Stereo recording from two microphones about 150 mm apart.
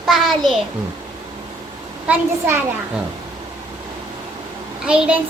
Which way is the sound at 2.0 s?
15° right (ahead or behind).